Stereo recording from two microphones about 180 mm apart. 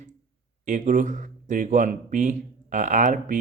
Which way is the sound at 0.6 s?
45° right (ahead or behind).